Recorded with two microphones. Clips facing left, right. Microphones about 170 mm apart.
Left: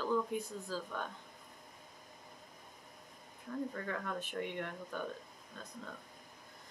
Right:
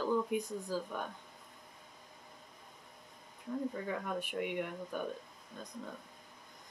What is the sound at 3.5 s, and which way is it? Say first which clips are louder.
Speech: right 2 dB; 15° right (ahead or behind).